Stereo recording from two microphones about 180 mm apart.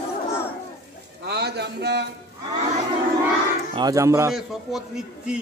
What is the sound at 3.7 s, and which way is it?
Speech, 20° right (ahead or behind).